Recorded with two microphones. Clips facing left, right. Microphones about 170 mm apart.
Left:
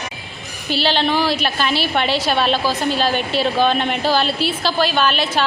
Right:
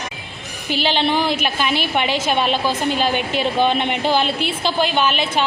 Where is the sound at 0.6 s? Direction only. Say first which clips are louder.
Left 1 dB; 15° right (ahead or behind).